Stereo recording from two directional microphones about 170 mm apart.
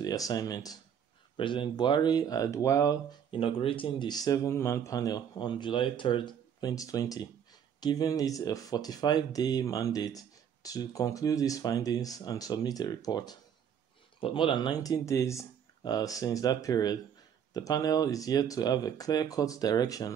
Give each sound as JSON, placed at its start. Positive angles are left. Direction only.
{"t": 0.0, "sound": "speech", "side_deg": 20}
{"t": 3.3, "sound": "speech", "side_deg": 30}